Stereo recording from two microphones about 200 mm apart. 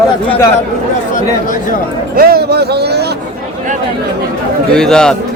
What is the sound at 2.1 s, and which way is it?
Speech, 50° right (ahead or behind).